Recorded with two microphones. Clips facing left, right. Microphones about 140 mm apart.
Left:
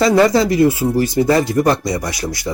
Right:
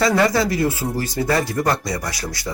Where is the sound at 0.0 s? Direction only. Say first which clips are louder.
Left 5 dB; 25° left (ahead or behind).